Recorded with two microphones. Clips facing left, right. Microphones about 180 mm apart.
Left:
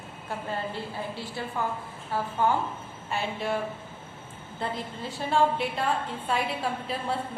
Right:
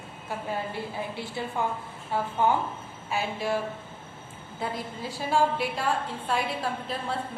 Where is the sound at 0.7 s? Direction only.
15° right (ahead or behind).